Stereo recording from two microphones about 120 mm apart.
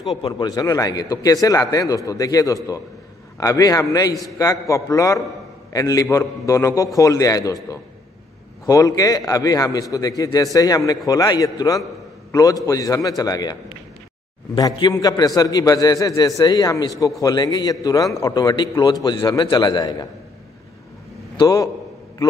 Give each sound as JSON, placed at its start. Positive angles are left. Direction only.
{"t": 0.2, "sound": "a man's voice", "side_deg": 35}
{"t": 8.6, "sound": "a man's voice", "side_deg": 30}